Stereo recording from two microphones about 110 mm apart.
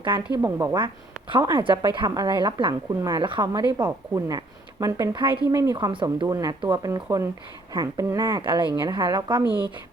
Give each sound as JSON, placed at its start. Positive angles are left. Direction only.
{"t": 0.6, "sound": "a woman's voice", "side_deg": -35}
{"t": 5.1, "sound": "a woman's voice", "side_deg": -45}
{"t": 5.5, "sound": "speech", "side_deg": -25}
{"t": 5.7, "sound": "a woman's voice", "side_deg": -45}
{"t": 6.2, "sound": "a woman's voice", "side_deg": -30}